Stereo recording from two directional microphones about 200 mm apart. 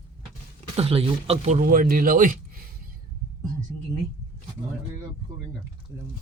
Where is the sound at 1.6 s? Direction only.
45° right (ahead or behind).